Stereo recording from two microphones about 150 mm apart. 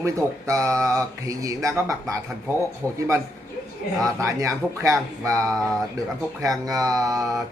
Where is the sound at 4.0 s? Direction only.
20° right (ahead or behind).